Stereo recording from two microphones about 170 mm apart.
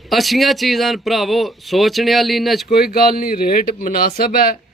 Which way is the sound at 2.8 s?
60° left (ahead or behind).